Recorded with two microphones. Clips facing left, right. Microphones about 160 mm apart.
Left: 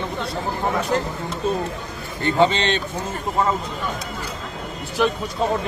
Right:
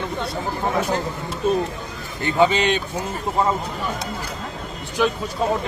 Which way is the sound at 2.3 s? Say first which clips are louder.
Right 1 dB; 10° right (ahead or behind).